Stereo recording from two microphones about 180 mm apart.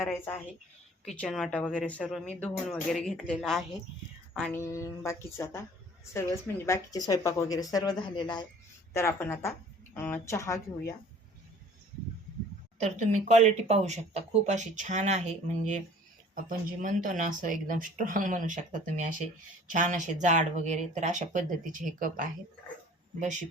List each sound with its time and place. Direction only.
0.0 s a woman's voice: 15° left (ahead or behind)
4.5 s a woman's voice: 15° left (ahead or behind)
8.9 s speech: 15° left (ahead or behind)
12.8 s speech: 40° right (ahead or behind)